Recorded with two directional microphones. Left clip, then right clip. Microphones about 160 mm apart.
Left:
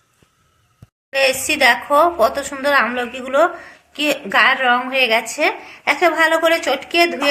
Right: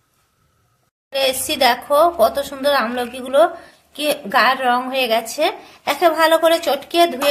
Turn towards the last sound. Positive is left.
turn(degrees=-25)  # may be behind; listen again after turning